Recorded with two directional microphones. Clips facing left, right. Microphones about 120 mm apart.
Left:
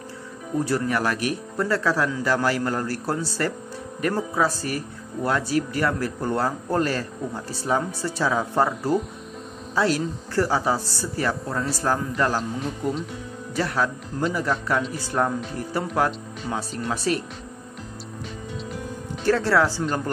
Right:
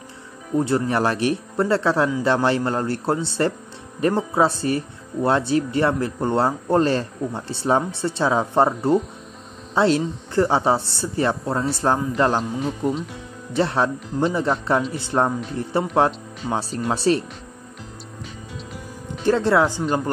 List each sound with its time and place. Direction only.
0.6 s speech: 25° right (ahead or behind)
13.6 s speech: 25° right (ahead or behind)
19.2 s speech: 20° right (ahead or behind)